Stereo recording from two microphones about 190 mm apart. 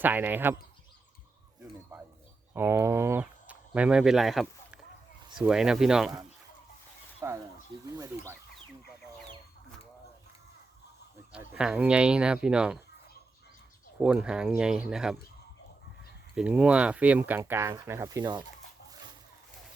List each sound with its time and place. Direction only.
0.0 s speech: 10° right (ahead or behind)
2.5 s speech: 15° right (ahead or behind)
7.2 s speech: 15° right (ahead or behind)
11.3 s speech: 5° right (ahead or behind)
14.0 s speech: 5° right (ahead or behind)
16.3 s speech: 5° right (ahead or behind); by 18.4 s 25° right (ahead or behind)